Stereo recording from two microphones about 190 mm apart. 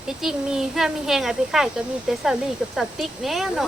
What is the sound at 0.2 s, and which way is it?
Speech, 5° right (ahead or behind).